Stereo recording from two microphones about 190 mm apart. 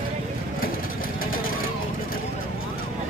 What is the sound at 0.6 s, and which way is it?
Vehicle, 50° left (ahead or behind).